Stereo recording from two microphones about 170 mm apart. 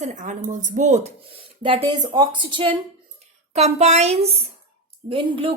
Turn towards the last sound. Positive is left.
turn(degrees=-30)  # may be behind; listen again after turning